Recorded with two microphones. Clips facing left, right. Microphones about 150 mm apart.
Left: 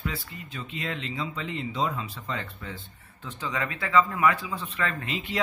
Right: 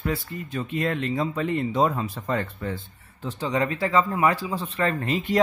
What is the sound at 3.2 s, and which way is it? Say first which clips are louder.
Speech: right 7 dB; 35° right (ahead or behind).